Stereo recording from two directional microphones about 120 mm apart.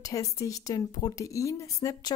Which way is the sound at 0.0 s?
30° left (ahead or behind).